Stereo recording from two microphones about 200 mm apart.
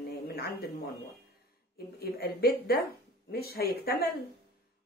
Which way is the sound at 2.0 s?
50° left (ahead or behind).